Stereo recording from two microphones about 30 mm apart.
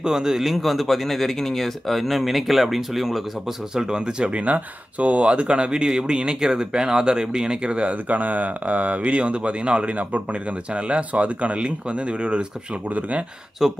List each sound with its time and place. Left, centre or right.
0.0 s a man's voice: centre
0.6 s speech: centre
3.7 s speech: right
4.3 s speech: right
8.1 s speech: right
13.6 s a man's voice: centre